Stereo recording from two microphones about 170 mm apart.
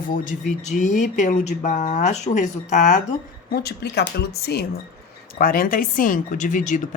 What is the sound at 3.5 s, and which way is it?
Speech, 70° left (ahead or behind).